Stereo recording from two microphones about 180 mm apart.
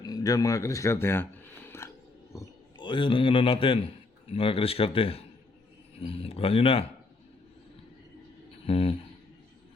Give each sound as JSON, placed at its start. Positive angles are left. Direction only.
{"t": 0.0, "sound": "a sound", "side_deg": 20}
{"t": 2.3, "sound": "a man's voice", "side_deg": 20}
{"t": 8.6, "sound": "speech", "side_deg": 30}